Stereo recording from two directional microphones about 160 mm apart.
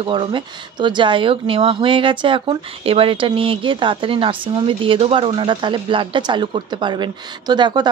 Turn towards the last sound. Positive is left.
turn(degrees=-25)  # may be behind; listen again after turning